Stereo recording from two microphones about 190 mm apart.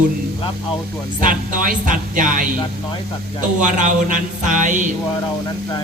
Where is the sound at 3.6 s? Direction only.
40° right (ahead or behind).